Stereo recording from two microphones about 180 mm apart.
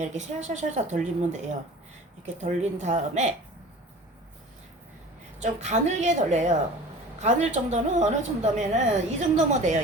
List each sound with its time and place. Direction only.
0.0 s a woman's voice: 40° right (ahead or behind)
5.4 s a woman's voice: 40° right (ahead or behind)